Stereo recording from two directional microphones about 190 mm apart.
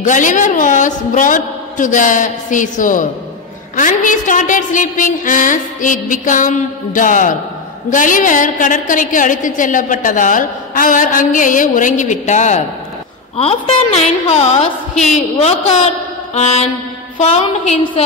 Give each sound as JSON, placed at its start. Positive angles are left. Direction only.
{"t": 0.0, "sound": "a woman's voice", "side_deg": 40}